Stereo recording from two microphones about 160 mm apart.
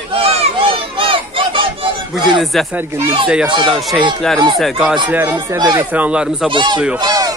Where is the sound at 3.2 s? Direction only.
5° right (ahead or behind).